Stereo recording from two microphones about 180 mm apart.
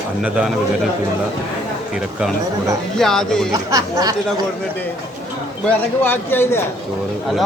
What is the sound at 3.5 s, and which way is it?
Speech, 20° right (ahead or behind).